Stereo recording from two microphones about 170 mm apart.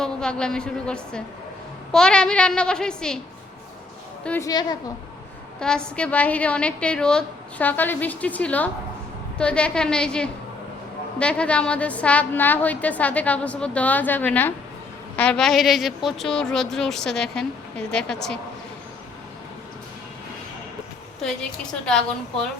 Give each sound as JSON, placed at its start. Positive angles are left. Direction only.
{"t": 0.0, "sound": "a woman's voice", "side_deg": 5}
{"t": 4.2, "sound": "a woman's voice", "side_deg": 10}
{"t": 4.4, "sound": "a woman's voice", "side_deg": 20}
{"t": 5.5, "sound": "a woman's voice", "side_deg": 5}
{"t": 21.2, "sound": "a woman's voice", "side_deg": 5}